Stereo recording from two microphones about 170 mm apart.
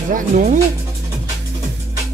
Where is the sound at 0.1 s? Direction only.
50° right (ahead or behind).